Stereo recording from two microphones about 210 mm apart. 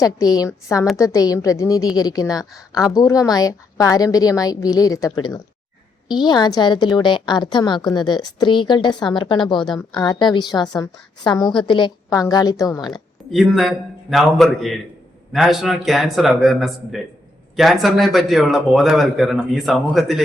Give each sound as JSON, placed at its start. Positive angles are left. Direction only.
{"t": 0.0, "sound": "a woman's voice", "side_deg": 15}
{"t": 13.3, "sound": "a man's voice", "side_deg": 0}